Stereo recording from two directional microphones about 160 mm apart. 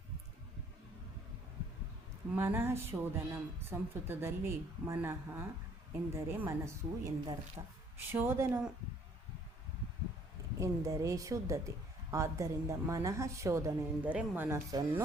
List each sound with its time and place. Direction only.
2.3 s a woman's voice: 15° right (ahead or behind)
8.1 s a woman's voice: 15° right (ahead or behind)
10.6 s a woman's voice: 20° right (ahead or behind)